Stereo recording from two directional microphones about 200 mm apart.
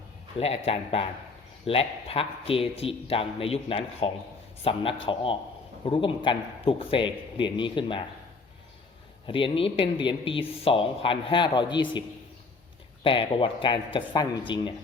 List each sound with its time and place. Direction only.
0.3 s a woman's voice: 30° left (ahead or behind)
9.2 s a woman's voice: 25° left (ahead or behind)